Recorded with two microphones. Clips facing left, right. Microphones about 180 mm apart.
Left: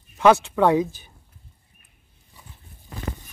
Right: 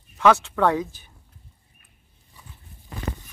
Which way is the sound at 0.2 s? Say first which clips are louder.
Left 2 dB; 15° left (ahead or behind).